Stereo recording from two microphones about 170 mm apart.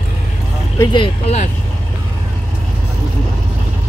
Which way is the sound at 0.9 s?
30° left (ahead or behind).